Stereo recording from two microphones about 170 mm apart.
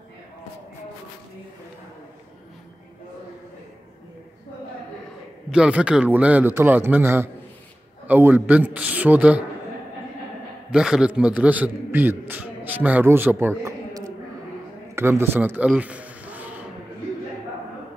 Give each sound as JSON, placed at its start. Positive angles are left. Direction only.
{"t": 5.5, "sound": "a man's voice", "side_deg": -5}
{"t": 10.7, "sound": "a man's voice", "side_deg": -5}
{"t": 15.7, "sound": "a sound", "side_deg": -10}